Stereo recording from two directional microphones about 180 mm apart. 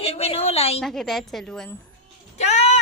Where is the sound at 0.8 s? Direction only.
Centre (ahead or behind).